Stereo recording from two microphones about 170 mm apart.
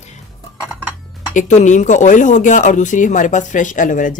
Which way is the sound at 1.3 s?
45° left (ahead or behind).